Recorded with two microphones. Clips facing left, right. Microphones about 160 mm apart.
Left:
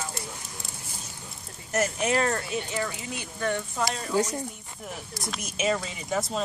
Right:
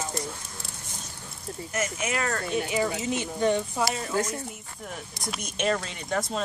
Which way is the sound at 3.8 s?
5° right (ahead or behind).